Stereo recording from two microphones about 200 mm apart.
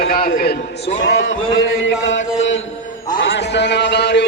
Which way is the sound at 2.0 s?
70° left (ahead or behind).